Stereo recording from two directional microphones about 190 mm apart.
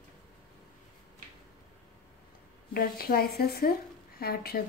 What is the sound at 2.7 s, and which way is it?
A woman's voice, 50° left (ahead or behind).